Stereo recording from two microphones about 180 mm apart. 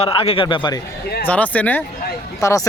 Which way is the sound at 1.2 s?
10° left (ahead or behind).